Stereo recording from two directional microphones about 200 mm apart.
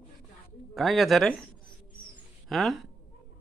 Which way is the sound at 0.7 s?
Centre (ahead or behind).